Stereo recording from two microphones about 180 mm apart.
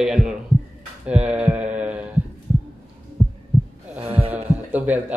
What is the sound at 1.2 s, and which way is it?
Mantra, 5° right (ahead or behind).